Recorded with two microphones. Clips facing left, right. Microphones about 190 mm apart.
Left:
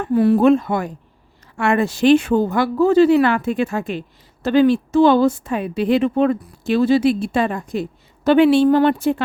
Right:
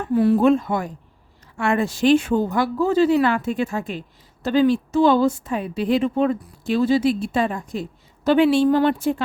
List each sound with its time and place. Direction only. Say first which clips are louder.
0.0 s speech: left 3 dB; 65° left (ahead or behind)